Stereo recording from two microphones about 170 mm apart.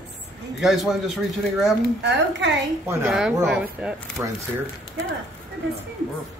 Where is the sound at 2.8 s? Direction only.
15° right (ahead or behind).